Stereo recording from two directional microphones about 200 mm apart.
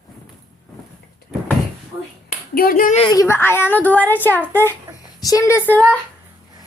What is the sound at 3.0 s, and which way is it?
Speech, 20° left (ahead or behind).